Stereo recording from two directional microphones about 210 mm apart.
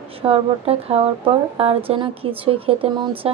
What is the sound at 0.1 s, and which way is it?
Speech, 25° right (ahead or behind).